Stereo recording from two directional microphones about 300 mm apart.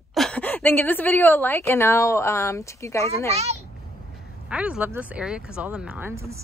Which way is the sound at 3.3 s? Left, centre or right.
Right.